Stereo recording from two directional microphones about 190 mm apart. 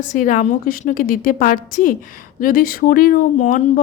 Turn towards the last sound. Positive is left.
turn(degrees=45)  # may be behind; listen again after turning